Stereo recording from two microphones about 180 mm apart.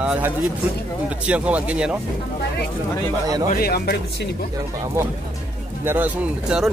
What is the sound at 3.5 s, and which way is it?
Speech, 55° left (ahead or behind).